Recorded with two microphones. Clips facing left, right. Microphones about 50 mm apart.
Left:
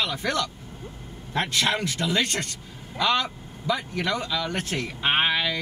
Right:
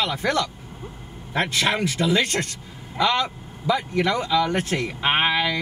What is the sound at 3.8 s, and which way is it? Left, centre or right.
Speech, right.